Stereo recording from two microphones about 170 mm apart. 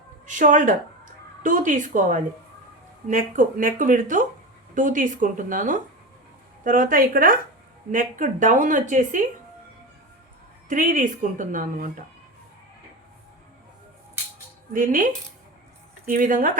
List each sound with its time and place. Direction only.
0.3 s a woman's voice: 50° right (ahead or behind)
10.7 s a woman's voice: 55° right (ahead or behind)
14.7 s a woman's voice: 50° right (ahead or behind)